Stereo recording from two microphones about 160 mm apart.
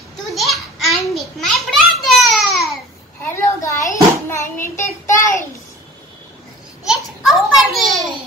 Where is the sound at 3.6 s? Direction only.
20° left (ahead or behind).